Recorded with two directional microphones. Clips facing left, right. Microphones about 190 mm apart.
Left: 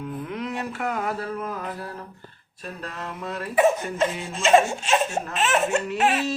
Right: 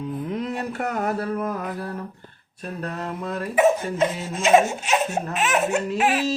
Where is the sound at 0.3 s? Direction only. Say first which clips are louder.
Right 2 dB; 35° right (ahead or behind).